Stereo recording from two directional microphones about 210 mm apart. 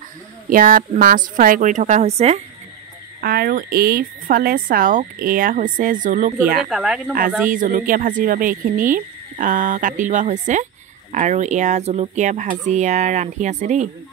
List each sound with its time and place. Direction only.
0.5 s speech: 40° right (ahead or behind)
3.2 s speech: 45° right (ahead or behind)
6.7 s speech: 5° right (ahead or behind)
7.4 s speech: 40° right (ahead or behind)